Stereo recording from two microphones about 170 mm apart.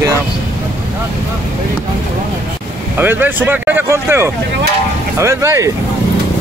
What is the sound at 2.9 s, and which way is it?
Speech, 10° right (ahead or behind).